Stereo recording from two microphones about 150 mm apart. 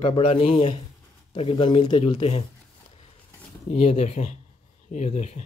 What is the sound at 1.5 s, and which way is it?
Speech, 30° left (ahead or behind).